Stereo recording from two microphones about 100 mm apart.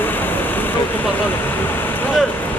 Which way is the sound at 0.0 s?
20° left (ahead or behind).